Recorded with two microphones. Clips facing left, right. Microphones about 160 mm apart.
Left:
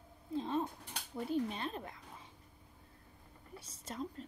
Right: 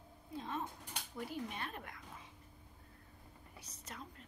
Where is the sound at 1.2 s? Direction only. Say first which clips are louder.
Left 7 dB; 25° left (ahead or behind).